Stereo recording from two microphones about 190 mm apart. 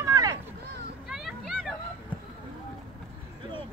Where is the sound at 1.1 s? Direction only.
Centre (ahead or behind).